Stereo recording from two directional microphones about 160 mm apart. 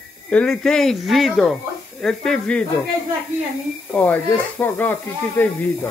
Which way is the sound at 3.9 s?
10° left (ahead or behind).